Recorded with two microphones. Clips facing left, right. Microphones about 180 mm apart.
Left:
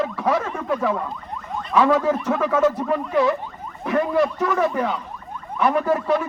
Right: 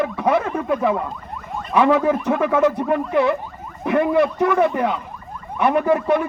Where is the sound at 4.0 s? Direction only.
60° right (ahead or behind).